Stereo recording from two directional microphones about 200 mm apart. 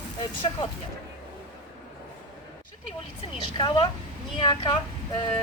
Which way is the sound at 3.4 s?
25° left (ahead or behind).